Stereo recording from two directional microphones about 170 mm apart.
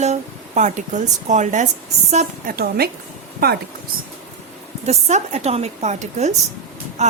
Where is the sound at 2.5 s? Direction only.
65° right (ahead or behind).